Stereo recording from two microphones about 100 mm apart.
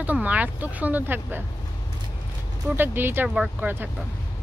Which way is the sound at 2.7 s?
20° right (ahead or behind).